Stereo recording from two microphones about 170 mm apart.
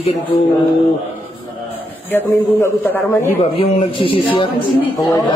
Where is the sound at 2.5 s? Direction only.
10° left (ahead or behind).